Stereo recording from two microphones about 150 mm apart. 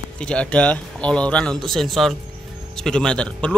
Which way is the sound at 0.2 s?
5° left (ahead or behind).